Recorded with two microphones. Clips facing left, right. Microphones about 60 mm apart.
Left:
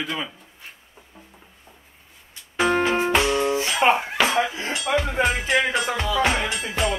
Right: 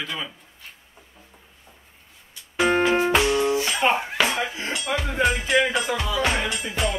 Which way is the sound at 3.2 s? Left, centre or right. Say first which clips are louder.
Even; centre.